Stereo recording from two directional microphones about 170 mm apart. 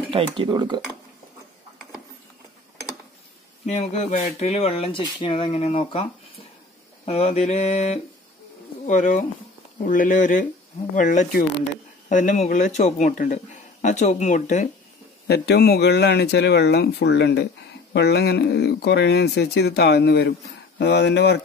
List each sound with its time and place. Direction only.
0.4 s speech: 25° right (ahead or behind)
3.6 s speech: 40° left (ahead or behind)
7.1 s speech: 40° left (ahead or behind)
15.2 s speech: 70° left (ahead or behind); by 17.5 s 90° left
17.9 s speech: 75° left (ahead or behind)